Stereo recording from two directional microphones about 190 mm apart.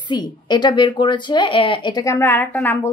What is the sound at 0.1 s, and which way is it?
A woman's voice, 25° left (ahead or behind).